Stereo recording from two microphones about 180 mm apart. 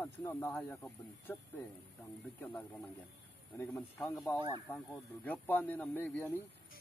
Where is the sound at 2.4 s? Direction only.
10° left (ahead or behind).